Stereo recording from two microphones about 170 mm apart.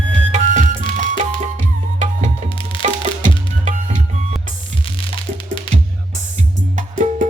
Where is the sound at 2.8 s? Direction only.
45° right (ahead or behind).